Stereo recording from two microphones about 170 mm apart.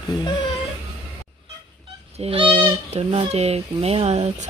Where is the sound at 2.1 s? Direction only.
35° right (ahead or behind).